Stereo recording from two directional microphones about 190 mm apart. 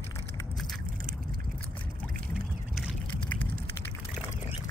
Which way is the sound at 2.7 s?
Centre (ahead or behind).